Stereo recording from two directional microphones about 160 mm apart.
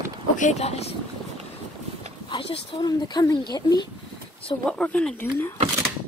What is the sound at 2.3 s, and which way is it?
Speech, 30° left (ahead or behind).